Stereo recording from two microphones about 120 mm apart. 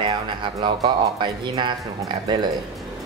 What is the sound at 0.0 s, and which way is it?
A man's voice, 40° right (ahead or behind).